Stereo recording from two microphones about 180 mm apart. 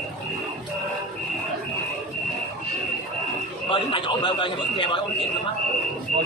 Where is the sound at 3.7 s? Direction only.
30° left (ahead or behind).